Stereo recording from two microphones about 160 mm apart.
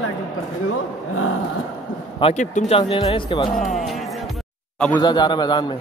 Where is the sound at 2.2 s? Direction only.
45° left (ahead or behind); by 3.6 s 30° left (ahead or behind).